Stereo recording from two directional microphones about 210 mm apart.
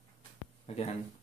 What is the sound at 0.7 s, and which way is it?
Speech, 30° left (ahead or behind).